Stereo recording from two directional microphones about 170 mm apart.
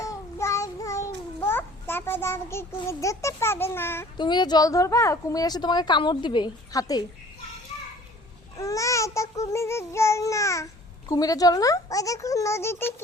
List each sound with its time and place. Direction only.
0.0 s child singing: 15° left (ahead or behind)
1.5 s a sound: 10° left (ahead or behind)
2.8 s a child's voice: 20° left (ahead or behind)
4.2 s a woman's voice: 25° left (ahead or behind)
8.5 s babbling: 20° left (ahead or behind)
11.1 s a woman's voice: 20° left (ahead or behind)